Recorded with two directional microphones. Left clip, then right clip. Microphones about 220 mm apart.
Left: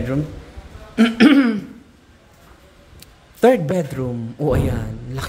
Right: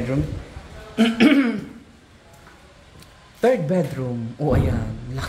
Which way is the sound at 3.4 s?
25° left (ahead or behind).